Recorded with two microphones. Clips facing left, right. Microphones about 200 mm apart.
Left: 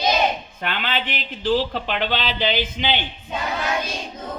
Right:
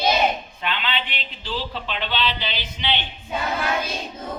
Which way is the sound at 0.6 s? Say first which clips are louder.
Left 2 dB; 50° left (ahead or behind).